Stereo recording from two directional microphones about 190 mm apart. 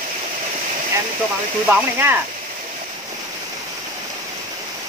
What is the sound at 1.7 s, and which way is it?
Speech, 10° right (ahead or behind).